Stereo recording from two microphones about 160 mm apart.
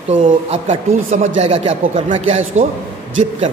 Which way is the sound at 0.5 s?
45° right (ahead or behind).